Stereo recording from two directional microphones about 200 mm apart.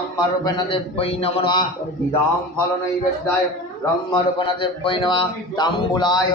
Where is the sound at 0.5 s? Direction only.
25° left (ahead or behind).